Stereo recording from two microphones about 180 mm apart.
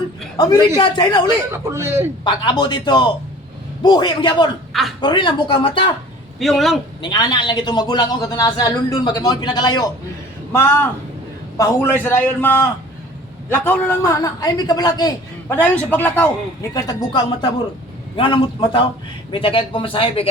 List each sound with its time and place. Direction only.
0.3 s a man's voice: 20° left (ahead or behind)
1.5 s speech: 15° right (ahead or behind)
2.2 s a man's voice: 25° left (ahead or behind)
4.7 s speech: centre (ahead or behind)
4.9 s a man's voice: 25° left (ahead or behind)
6.4 s a man's voice: centre (ahead or behind)
7.0 s a man's voice: 25° left (ahead or behind)
10.5 s a man's voice: 15° left (ahead or behind)
15.5 s a man's voice: 10° left (ahead or behind)
16.7 s a man's voice: 20° left (ahead or behind)